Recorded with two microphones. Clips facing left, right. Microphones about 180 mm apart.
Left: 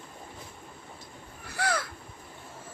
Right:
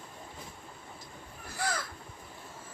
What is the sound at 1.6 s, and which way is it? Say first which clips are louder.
Crow: left 4 dB; 70° left (ahead or behind).